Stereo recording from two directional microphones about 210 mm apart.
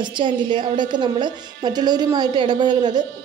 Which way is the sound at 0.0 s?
20° right (ahead or behind).